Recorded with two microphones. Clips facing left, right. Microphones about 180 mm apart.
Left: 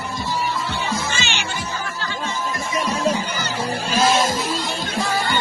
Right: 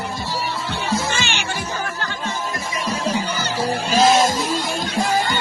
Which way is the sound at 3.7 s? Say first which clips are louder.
Right 3 dB; 40° right (ahead or behind).